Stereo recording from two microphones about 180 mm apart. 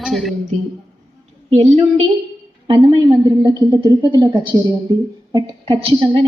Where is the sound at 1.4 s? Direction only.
35° right (ahead or behind).